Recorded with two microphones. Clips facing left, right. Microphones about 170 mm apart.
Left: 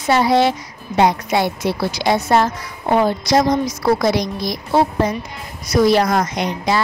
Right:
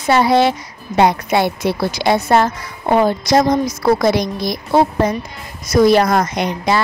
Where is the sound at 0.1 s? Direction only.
60° right (ahead or behind).